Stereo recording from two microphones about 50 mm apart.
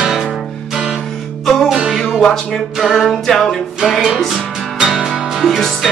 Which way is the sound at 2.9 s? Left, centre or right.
Centre.